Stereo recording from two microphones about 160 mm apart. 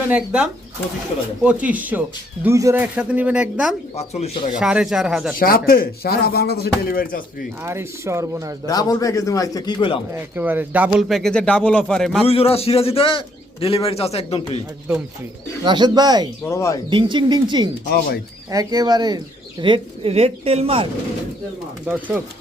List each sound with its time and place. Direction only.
0.1 s speech: 5° right (ahead or behind)
3.9 s a man's voice: 40° left (ahead or behind)
4.6 s speech: 5° right (ahead or behind)
5.4 s speech: 65° left (ahead or behind)
7.6 s speech: 15° right (ahead or behind)
8.6 s a man's voice: 25° left (ahead or behind)
10.2 s speech: 10° right (ahead or behind)
11.2 s speech: 5° left (ahead or behind)
12.2 s a man's voice: 40° left (ahead or behind)
15.6 s speech: 30° right (ahead or behind)
16.4 s a man's voice: 20° left (ahead or behind)
16.9 s speech: 30° right (ahead or behind)
21.8 s speech: 10° right (ahead or behind)